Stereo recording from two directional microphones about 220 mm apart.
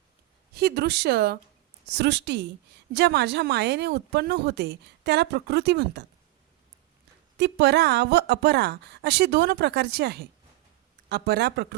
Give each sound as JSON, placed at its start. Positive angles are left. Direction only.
{"t": 0.5, "sound": "a woman's voice", "side_deg": -45}
{"t": 7.3, "sound": "a woman's voice", "side_deg": -50}